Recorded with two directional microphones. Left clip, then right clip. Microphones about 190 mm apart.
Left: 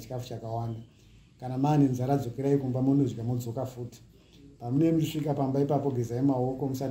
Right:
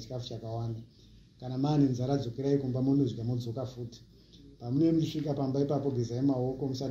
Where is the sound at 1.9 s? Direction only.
45° left (ahead or behind).